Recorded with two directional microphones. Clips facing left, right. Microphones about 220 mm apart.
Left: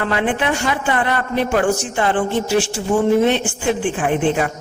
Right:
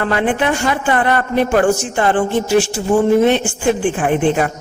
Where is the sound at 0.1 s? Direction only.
45° right (ahead or behind).